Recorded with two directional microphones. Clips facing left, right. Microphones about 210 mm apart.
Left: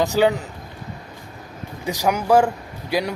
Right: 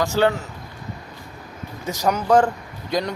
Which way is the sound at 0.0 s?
15° left (ahead or behind).